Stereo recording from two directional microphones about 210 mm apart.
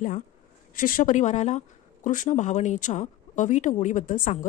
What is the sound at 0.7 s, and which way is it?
A woman's voice, 40° left (ahead or behind).